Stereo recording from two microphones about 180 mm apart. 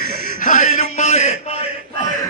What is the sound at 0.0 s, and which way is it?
Music, 45° left (ahead or behind).